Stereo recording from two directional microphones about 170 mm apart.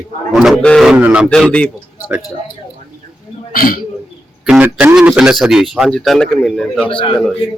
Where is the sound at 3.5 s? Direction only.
60° left (ahead or behind).